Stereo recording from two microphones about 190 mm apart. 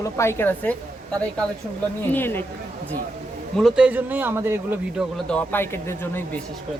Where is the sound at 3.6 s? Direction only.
5° right (ahead or behind).